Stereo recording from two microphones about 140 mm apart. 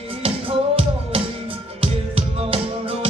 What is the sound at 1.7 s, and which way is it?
Music, 40° right (ahead or behind).